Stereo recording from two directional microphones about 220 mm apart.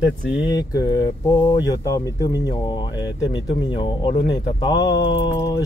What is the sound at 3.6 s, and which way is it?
Mantra, 20° left (ahead or behind).